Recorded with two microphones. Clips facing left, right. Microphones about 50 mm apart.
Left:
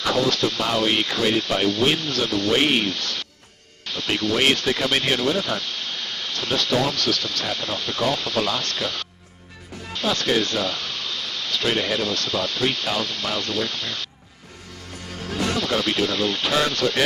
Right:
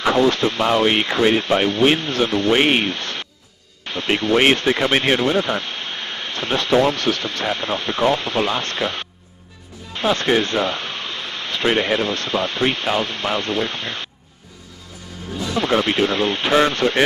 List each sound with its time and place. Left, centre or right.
0.0 s speech: right
15.5 s speech: right